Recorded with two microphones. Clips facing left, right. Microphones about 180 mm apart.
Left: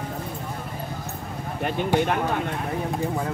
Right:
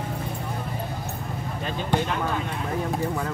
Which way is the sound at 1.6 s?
60° left (ahead or behind).